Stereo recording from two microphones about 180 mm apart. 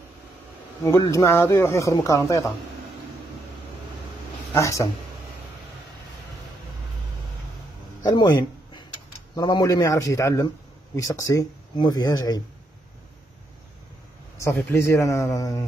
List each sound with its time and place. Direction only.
0.8 s speech: 20° left (ahead or behind)
4.6 s speech: 15° left (ahead or behind)
8.0 s a sound: 20° left (ahead or behind)
9.3 s speech: 20° left (ahead or behind)
14.6 s speech: 15° left (ahead or behind)